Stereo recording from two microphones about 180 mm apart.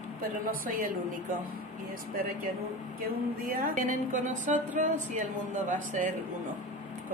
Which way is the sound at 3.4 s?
50° right (ahead or behind).